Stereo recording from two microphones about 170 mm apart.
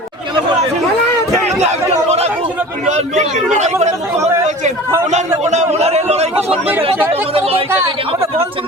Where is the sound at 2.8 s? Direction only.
45° right (ahead or behind).